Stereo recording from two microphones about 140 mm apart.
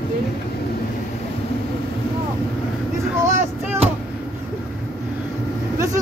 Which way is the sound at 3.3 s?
15° right (ahead or behind).